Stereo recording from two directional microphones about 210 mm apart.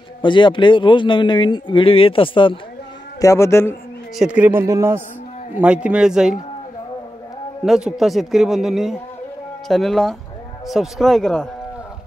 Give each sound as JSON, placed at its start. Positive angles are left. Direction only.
{"t": 0.2, "sound": "a man's voice", "side_deg": 25}
{"t": 4.2, "sound": "a man's voice", "side_deg": -5}
{"t": 7.6, "sound": "speech", "side_deg": 0}